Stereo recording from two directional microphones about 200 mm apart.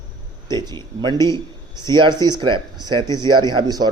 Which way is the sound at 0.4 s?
20° right (ahead or behind).